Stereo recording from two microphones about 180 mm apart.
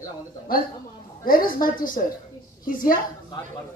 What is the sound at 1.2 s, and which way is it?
A woman's voice, 50° left (ahead or behind).